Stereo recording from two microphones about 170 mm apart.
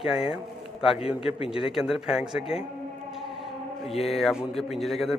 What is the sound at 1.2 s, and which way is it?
Speech, 35° left (ahead or behind).